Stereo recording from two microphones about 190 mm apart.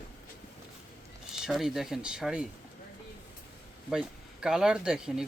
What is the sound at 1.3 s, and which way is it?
Speech, centre (ahead or behind).